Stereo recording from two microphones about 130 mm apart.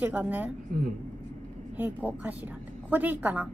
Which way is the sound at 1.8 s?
15° right (ahead or behind).